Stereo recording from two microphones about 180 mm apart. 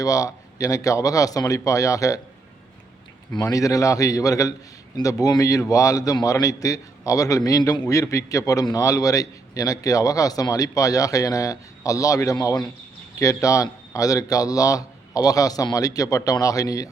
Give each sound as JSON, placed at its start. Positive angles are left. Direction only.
{"t": 0.0, "sound": "a man's voice", "side_deg": 20}
{"t": 3.3, "sound": "a man's voice", "side_deg": 20}